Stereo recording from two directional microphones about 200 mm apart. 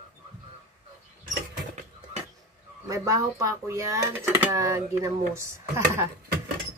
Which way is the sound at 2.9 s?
15° right (ahead or behind).